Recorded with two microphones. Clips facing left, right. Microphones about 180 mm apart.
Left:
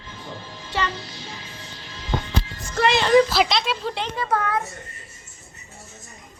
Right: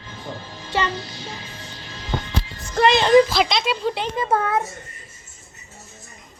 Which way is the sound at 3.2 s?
Centre (ahead or behind).